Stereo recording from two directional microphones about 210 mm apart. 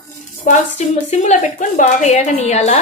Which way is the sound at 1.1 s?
35° left (ahead or behind).